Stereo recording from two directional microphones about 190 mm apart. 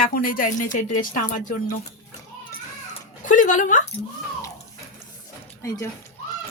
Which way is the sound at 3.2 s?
40° left (ahead or behind).